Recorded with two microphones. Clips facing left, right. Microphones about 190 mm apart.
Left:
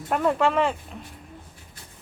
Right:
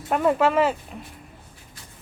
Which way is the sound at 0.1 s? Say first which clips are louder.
Right 2 dB; 5° right (ahead or behind).